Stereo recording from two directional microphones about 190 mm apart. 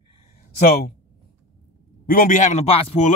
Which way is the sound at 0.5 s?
50° left (ahead or behind).